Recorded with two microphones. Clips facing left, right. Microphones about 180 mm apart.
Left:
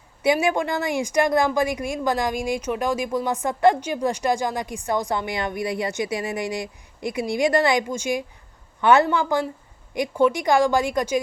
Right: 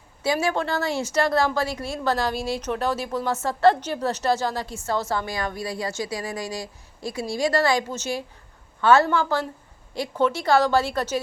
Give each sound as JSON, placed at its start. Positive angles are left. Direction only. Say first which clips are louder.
{"t": 0.2, "sound": "a woman's voice", "louder": "left 3 dB", "side_deg": 20}